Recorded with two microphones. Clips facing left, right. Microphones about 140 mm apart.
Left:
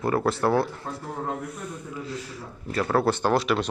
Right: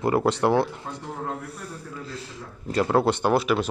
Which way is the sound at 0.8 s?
5° left (ahead or behind).